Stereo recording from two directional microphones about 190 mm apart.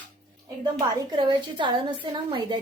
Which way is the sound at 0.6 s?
25° right (ahead or behind).